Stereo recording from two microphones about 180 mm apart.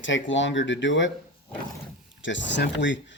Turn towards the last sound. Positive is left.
turn(degrees=80)